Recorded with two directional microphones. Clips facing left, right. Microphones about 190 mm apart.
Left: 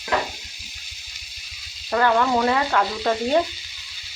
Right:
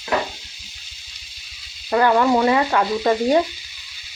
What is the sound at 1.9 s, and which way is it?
Stir, 10° right (ahead or behind).